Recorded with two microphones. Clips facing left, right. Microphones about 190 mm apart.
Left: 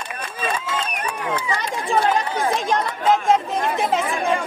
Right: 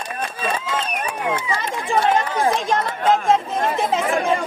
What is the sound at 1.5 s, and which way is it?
Chatter, centre (ahead or behind).